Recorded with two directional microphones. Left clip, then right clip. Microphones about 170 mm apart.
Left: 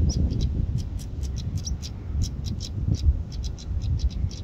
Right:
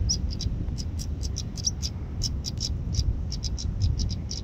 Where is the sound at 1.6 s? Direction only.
Centre (ahead or behind).